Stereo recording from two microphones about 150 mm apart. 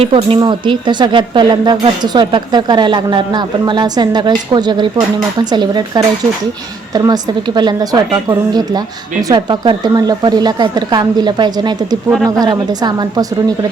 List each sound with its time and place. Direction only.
0.0 s a woman's voice: 35° right (ahead or behind)